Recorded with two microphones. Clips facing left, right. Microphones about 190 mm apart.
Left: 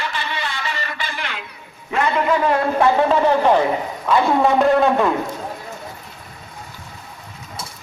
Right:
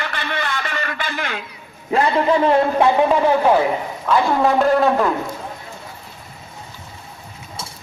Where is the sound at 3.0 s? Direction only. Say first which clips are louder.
Even; 10° right (ahead or behind).